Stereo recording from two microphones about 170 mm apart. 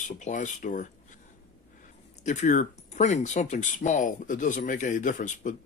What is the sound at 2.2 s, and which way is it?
Speech, 45° left (ahead or behind).